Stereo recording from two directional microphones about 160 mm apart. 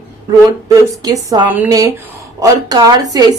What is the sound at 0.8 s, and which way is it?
A woman's voice, 20° right (ahead or behind).